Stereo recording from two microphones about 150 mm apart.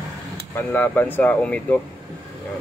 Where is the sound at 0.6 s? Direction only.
15° left (ahead or behind).